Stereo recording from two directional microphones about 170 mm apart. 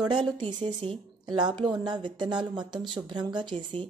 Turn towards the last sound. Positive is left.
turn(degrees=-25)  # may be behind; listen again after turning